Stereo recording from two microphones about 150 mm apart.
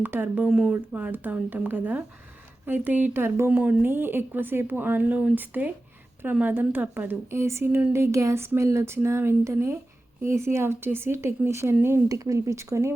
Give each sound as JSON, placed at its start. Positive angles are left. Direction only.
{"t": 0.0, "sound": "a woman's voice", "side_deg": -10}